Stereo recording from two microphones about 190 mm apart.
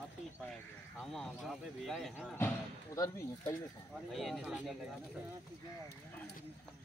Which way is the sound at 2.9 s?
15° left (ahead or behind).